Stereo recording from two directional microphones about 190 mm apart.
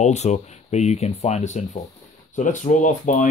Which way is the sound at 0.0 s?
35° left (ahead or behind).